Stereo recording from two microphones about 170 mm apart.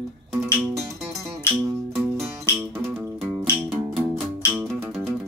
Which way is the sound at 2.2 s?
15° right (ahead or behind).